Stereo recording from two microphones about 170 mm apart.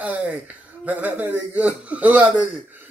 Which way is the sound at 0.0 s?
5° right (ahead or behind).